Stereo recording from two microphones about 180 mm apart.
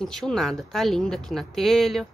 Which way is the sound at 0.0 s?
Centre (ahead or behind).